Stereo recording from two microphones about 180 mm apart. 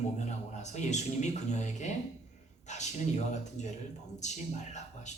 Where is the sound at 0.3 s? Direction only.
40° left (ahead or behind).